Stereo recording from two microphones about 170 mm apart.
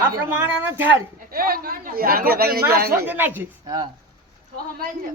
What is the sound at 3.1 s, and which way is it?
Speech, 10° right (ahead or behind).